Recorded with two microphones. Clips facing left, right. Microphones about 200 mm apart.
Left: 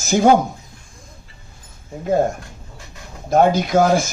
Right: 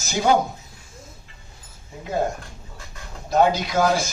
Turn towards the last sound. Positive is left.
turn(degrees=50)  # may be behind; listen again after turning